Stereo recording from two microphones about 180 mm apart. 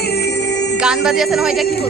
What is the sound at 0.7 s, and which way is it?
Music, 5° right (ahead or behind).